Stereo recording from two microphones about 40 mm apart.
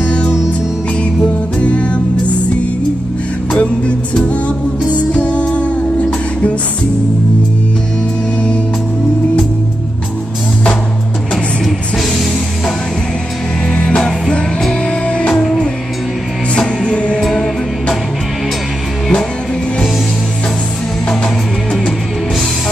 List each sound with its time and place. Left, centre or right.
1.2 s music: left
3.5 s music: left
13.7 s music: left
16.5 s music: left
17.2 s music: centre